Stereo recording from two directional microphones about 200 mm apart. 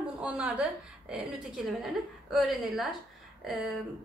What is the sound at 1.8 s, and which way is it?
A woman's voice, centre (ahead or behind).